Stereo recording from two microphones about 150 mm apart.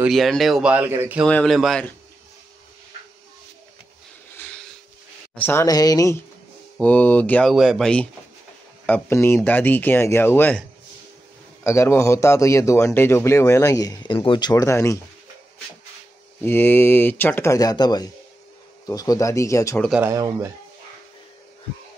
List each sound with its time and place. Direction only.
0.0 s speech: centre (ahead or behind)
1.2 s speech: 5° left (ahead or behind)
5.3 s a man's voice: 15° left (ahead or behind)
6.8 s speech: 10° left (ahead or behind)
11.6 s a man's voice: 15° left (ahead or behind)
16.4 s a man's voice: 15° left (ahead or behind)
20.0 s speech: 20° right (ahead or behind)